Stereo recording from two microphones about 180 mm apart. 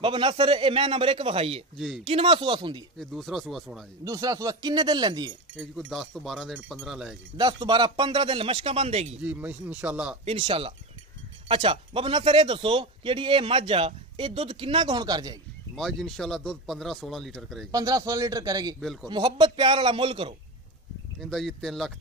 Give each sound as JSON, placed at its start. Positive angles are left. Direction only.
{"t": 0.0, "sound": "a man's voice", "side_deg": -30}
{"t": 3.0, "sound": "speech", "side_deg": 0}
{"t": 4.0, "sound": "a man's voice", "side_deg": -20}
{"t": 5.6, "sound": "speech", "side_deg": 0}
{"t": 7.3, "sound": "a man's voice", "side_deg": -25}
{"t": 9.2, "sound": "speech", "side_deg": -10}
{"t": 10.2, "sound": "a man's voice", "side_deg": -30}
{"t": 15.7, "sound": "speech", "side_deg": 0}
{"t": 17.6, "sound": "a man's voice", "side_deg": -20}
{"t": 21.2, "sound": "speech", "side_deg": 0}